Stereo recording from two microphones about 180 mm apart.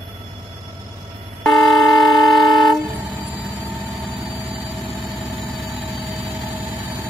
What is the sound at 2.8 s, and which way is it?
Vehicle, 20° right (ahead or behind).